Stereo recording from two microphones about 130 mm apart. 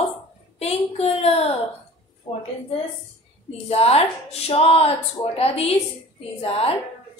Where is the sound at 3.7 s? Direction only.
50° left (ahead or behind).